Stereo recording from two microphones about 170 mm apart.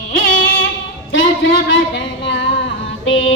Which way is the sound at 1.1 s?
90° left.